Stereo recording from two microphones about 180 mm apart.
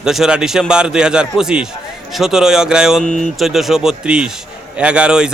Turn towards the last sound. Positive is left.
turn(degrees=-5)  # may be behind; listen again after turning